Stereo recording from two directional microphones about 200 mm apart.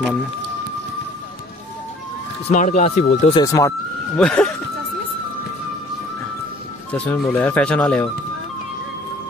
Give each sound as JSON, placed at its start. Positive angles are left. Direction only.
{"t": 2.5, "sound": "speech", "side_deg": 35}
{"t": 3.3, "sound": "speech", "side_deg": 15}
{"t": 4.2, "sound": "speech", "side_deg": 5}
{"t": 6.9, "sound": "speech", "side_deg": 5}